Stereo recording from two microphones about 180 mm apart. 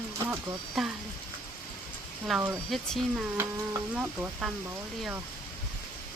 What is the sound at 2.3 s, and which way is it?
Speech, 5° right (ahead or behind).